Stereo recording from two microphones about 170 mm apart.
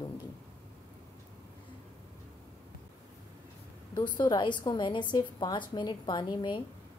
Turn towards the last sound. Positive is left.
turn(degrees=25)  # may be behind; listen again after turning